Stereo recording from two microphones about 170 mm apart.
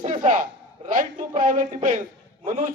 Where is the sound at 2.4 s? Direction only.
35° right (ahead or behind).